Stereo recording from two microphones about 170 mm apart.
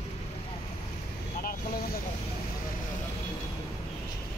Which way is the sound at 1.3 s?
60° left (ahead or behind).